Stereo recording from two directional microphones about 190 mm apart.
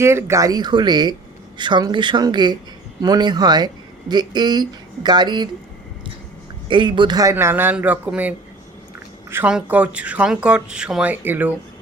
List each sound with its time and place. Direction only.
0.0 s speech: 15° right (ahead or behind)
6.7 s speech: 25° right (ahead or behind); by 11.5 s 10° right (ahead or behind)